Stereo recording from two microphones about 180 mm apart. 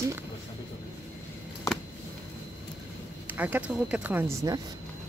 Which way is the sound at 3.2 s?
10° right (ahead or behind).